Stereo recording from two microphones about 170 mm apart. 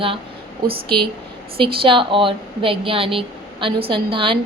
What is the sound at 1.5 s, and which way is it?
A woman's voice, 30° right (ahead or behind).